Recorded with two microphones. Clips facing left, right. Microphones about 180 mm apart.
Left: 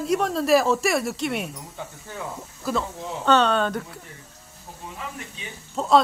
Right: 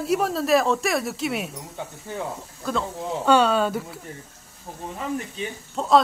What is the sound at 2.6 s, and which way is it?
Speech, 5° left (ahead or behind).